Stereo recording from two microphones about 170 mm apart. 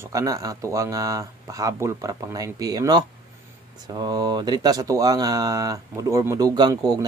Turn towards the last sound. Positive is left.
turn(degrees=-20)  # may be behind; listen again after turning